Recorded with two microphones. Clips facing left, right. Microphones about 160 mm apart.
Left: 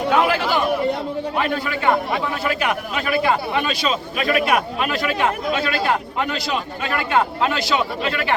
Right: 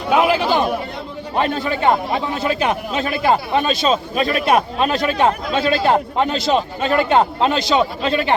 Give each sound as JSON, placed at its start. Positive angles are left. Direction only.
{"t": 0.1, "sound": "chatter", "side_deg": -15}
{"t": 1.4, "sound": "speech", "side_deg": -25}